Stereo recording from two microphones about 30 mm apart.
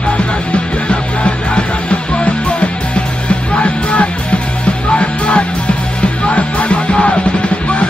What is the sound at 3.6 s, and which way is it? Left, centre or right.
Music, left.